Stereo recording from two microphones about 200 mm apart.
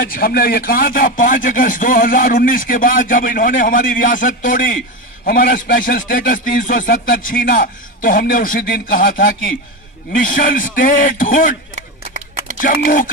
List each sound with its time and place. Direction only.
0.0 s a man's voice: 45° left (ahead or behind)
12.5 s a man's voice: 45° left (ahead or behind)